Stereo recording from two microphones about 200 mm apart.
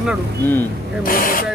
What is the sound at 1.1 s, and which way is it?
Speech, 45° left (ahead or behind).